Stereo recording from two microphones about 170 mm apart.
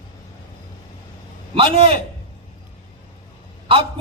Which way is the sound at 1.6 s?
35° right (ahead or behind).